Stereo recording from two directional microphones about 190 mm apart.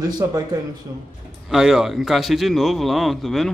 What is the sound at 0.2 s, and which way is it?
Speech, 15° right (ahead or behind).